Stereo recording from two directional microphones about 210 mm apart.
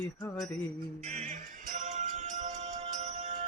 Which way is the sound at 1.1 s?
35° right (ahead or behind).